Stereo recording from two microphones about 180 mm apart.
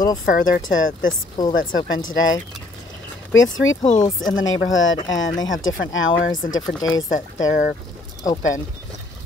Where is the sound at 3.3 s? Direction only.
90° left.